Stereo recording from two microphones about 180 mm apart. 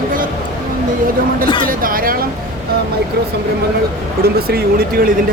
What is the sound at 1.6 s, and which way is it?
Speech, 50° right (ahead or behind).